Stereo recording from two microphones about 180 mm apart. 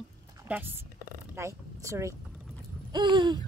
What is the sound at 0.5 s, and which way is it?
Speech, 10° right (ahead or behind).